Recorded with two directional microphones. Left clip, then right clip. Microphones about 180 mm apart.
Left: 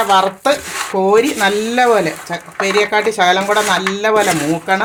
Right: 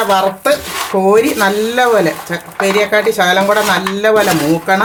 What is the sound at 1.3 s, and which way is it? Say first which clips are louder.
Speech: right 2 dB; 30° left (ahead or behind).